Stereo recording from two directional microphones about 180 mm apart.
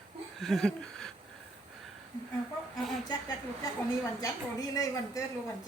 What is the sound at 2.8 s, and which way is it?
Speech, centre (ahead or behind).